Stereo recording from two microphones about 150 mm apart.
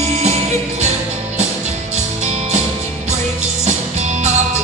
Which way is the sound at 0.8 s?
50° right (ahead or behind).